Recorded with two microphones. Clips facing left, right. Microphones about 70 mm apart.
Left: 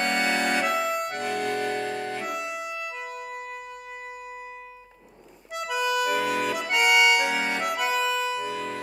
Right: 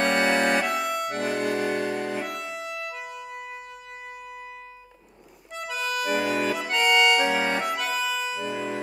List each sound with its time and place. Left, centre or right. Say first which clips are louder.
0.0 s accordion: right 3 dB; centre
2.7 s music: even; centre
5.5 s accordion: left 4 dB; centre
6.7 s accordion: left 1 dB; centre
7.2 s accordion: right 2 dB; centre
7.9 s music: left 2 dB; centre